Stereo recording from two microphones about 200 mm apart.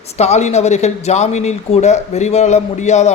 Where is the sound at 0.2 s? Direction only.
35° left (ahead or behind).